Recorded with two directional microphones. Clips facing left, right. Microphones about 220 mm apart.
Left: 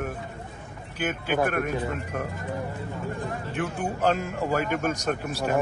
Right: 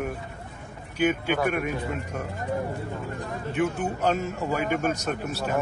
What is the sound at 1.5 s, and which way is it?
Speech, centre (ahead or behind).